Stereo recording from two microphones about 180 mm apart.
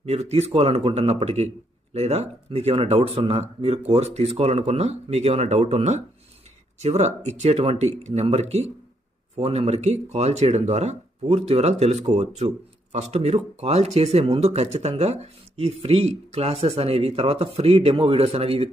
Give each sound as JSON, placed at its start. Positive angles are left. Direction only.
{"t": 0.0, "sound": "speech", "side_deg": -35}